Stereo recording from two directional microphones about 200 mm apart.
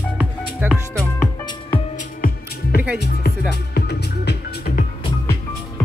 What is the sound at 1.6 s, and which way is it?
Music, 30° left (ahead or behind).